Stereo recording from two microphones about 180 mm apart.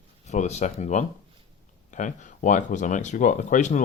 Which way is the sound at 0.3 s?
40° left (ahead or behind).